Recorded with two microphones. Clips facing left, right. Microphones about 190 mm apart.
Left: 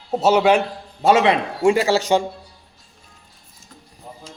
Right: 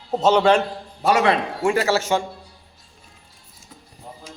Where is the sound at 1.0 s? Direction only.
20° left (ahead or behind).